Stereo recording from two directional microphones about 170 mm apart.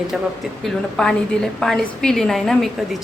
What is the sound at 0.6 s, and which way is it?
A woman's voice, 5° left (ahead or behind).